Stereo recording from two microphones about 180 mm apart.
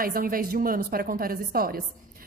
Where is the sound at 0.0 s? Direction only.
55° right (ahead or behind).